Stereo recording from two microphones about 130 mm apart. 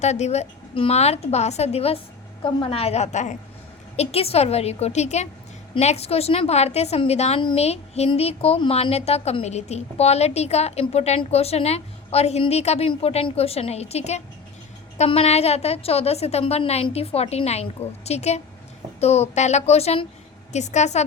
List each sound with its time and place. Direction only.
0.0 s a woman's voice: 60° left (ahead or behind)
3.9 s a woman's voice: 55° left (ahead or behind)
20.5 s a woman's voice: 65° left (ahead or behind)